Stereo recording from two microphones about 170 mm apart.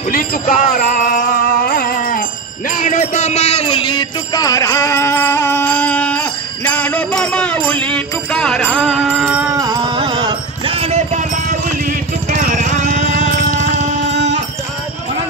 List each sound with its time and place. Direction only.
0.1 s music: 55° left (ahead or behind)
2.8 s music: 45° left (ahead or behind); by 9.6 s 10° right (ahead or behind)
9.6 s music: 25° right (ahead or behind); by 13.2 s 50° right (ahead or behind)
14.1 s music: 90° right